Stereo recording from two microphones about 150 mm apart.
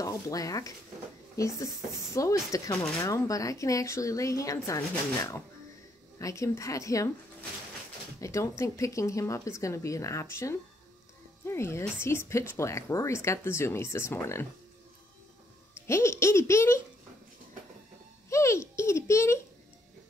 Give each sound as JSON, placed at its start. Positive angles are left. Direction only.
{"t": 0.0, "sound": "speech", "side_deg": 20}
{"t": 8.2, "sound": "speech", "side_deg": 20}
{"t": 15.7, "sound": "speech", "side_deg": 20}
{"t": 18.3, "sound": "a sound", "side_deg": 20}